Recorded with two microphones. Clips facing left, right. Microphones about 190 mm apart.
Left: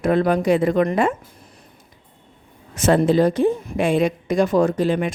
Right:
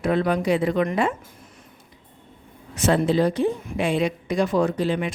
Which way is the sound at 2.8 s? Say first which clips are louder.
Left 4 dB; 45° left (ahead or behind).